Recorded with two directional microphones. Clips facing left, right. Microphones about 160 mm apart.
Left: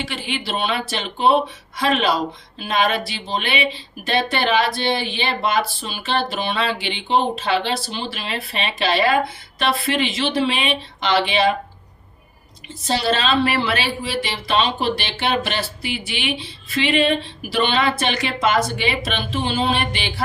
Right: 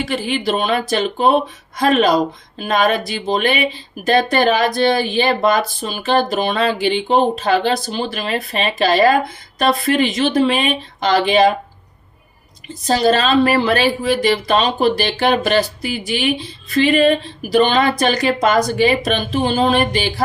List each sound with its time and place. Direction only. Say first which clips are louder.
0.0 s speech: right 8 dB; 45° right (ahead or behind)
12.9 s speech: right 5 dB; 45° right (ahead or behind)